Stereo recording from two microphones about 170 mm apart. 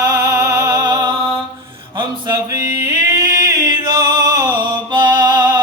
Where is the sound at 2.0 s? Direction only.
25° right (ahead or behind).